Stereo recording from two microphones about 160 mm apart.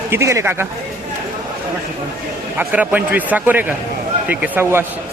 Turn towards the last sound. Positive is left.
turn(degrees=-15)  # may be behind; listen again after turning